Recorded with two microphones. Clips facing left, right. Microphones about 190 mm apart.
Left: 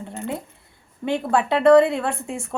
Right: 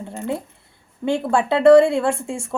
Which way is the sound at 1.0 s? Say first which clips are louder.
Right 2 dB; 25° right (ahead or behind).